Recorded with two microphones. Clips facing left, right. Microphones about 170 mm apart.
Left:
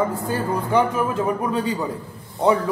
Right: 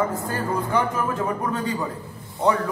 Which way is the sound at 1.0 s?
15° left (ahead or behind).